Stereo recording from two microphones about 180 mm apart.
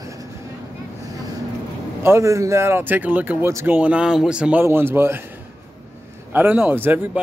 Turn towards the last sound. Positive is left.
turn(degrees=-10)  # may be behind; listen again after turning